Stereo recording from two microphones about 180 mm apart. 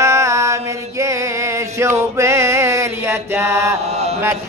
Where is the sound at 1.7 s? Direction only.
15° right (ahead or behind).